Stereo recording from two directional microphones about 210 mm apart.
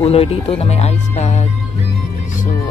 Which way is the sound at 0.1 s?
30° left (ahead or behind).